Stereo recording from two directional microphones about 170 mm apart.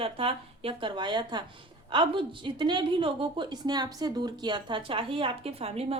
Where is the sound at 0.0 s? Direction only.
35° right (ahead or behind).